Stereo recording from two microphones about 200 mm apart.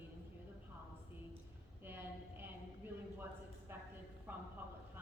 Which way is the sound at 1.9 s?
10° right (ahead or behind).